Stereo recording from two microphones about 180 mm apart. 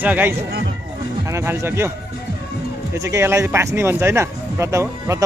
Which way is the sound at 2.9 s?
15° right (ahead or behind).